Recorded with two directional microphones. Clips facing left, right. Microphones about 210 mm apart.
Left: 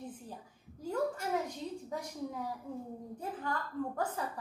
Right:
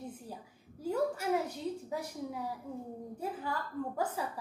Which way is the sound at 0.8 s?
10° right (ahead or behind).